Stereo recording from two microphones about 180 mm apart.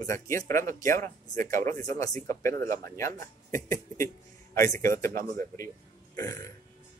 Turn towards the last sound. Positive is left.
turn(degrees=20)  # may be behind; listen again after turning